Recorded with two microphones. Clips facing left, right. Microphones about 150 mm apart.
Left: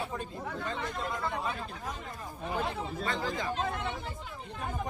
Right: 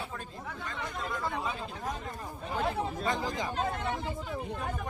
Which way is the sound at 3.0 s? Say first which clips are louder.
Left 2 dB; 15° right (ahead or behind).